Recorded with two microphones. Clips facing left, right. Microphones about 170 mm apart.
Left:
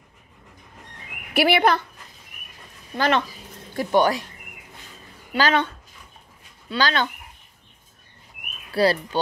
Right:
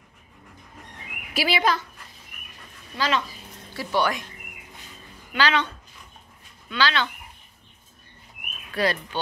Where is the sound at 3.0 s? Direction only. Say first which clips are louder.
Left 4 dB; 55° left (ahead or behind).